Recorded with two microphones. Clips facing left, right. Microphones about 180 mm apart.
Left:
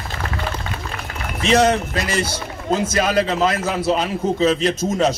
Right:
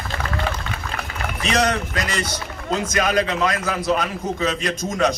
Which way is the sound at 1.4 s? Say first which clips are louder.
Left 5 dB; 25° left (ahead or behind).